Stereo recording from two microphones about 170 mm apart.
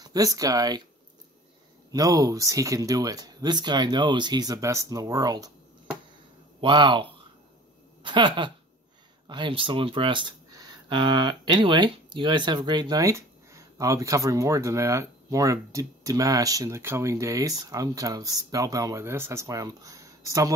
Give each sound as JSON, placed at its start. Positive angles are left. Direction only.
{"t": 0.0, "sound": "speech", "side_deg": -20}
{"t": 1.9, "sound": "speech", "side_deg": -20}
{"t": 6.6, "sound": "speech", "side_deg": -30}